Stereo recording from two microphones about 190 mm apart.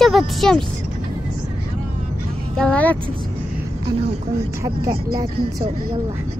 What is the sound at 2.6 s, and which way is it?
Speech, 5° left (ahead or behind).